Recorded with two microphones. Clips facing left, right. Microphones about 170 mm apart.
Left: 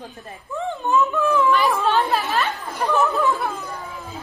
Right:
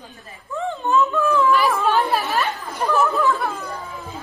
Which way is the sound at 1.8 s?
10° right (ahead or behind).